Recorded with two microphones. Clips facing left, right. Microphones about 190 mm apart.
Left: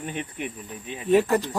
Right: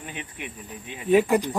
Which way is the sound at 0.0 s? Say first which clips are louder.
Left 5 dB; 45° left (ahead or behind).